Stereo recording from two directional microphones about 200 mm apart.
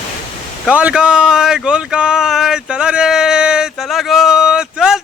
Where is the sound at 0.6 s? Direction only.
5° right (ahead or behind).